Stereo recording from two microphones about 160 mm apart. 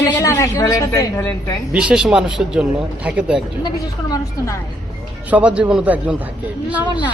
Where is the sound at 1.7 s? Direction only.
5° right (ahead or behind).